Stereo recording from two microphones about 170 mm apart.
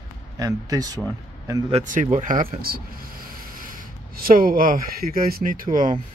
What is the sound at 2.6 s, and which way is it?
Speech, 60° right (ahead or behind).